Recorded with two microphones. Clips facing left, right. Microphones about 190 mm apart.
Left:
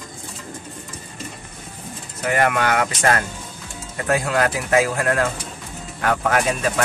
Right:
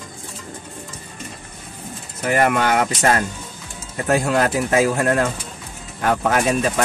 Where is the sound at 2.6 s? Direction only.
25° right (ahead or behind).